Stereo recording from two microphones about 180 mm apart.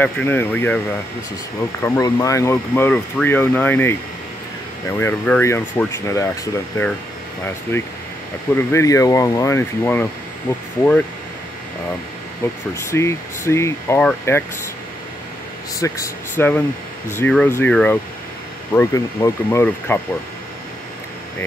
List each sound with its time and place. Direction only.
0.0 s speech: 10° left (ahead or behind)
12.7 s speech: 15° left (ahead or behind)
15.8 s speech: 15° left (ahead or behind)